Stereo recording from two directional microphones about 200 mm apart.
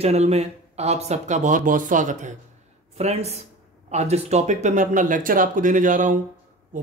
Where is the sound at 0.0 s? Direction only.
30° right (ahead or behind).